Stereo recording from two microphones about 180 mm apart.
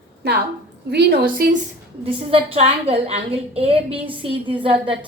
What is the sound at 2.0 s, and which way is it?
A woman's voice, 30° right (ahead or behind).